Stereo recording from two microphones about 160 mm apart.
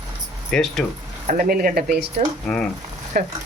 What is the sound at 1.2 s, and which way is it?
Speech, 60° right (ahead or behind).